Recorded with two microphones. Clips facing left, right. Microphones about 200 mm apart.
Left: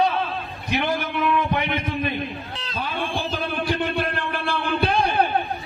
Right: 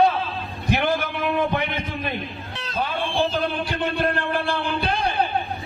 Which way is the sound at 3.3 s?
60° left (ahead or behind).